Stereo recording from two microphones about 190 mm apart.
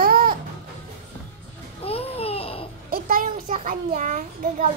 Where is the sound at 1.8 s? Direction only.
30° left (ahead or behind).